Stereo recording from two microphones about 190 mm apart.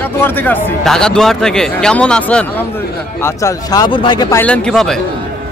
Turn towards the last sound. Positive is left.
turn(degrees=0)  # may be behind; listen again after turning